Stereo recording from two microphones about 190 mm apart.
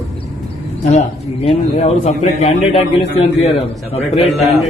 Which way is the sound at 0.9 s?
35° left (ahead or behind).